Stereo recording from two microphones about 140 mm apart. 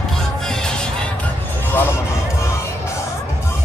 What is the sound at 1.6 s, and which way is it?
Music, 15° left (ahead or behind).